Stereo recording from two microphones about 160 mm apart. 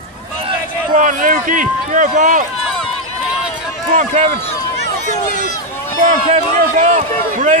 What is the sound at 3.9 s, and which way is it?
Speech, 55° right (ahead or behind).